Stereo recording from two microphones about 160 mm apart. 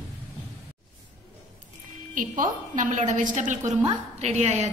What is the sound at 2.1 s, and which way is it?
A woman's voice, 55° right (ahead or behind).